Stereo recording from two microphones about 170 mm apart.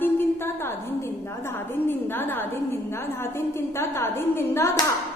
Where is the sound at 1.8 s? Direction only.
10° left (ahead or behind).